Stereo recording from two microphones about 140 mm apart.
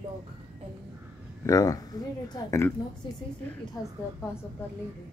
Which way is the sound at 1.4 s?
25° left (ahead or behind).